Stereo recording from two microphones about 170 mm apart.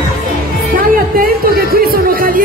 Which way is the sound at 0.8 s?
60° right (ahead or behind).